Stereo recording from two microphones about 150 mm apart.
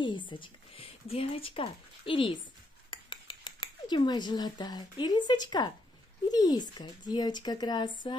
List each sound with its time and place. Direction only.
0.0 s speech: 30° left (ahead or behind)